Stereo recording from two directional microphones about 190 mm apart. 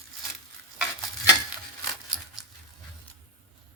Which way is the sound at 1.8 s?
Centre (ahead or behind).